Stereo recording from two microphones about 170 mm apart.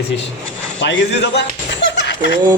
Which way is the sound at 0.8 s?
90° left.